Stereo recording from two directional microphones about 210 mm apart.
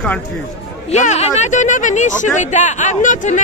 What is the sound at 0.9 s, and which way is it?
Speech, 35° left (ahead or behind).